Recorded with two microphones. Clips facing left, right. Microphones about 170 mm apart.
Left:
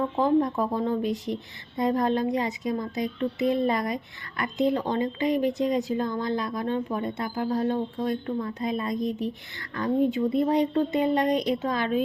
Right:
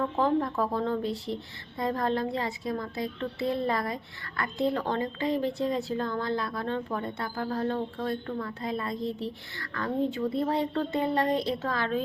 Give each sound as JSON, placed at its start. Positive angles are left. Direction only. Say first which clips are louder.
{"t": 0.0, "sound": "a woman's voice", "louder": "left 4 dB", "side_deg": 15}